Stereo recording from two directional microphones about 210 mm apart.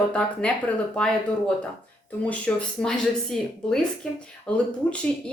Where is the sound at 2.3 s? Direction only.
5° left (ahead or behind).